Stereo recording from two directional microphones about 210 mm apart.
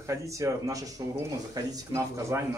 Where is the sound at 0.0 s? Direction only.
15° right (ahead or behind).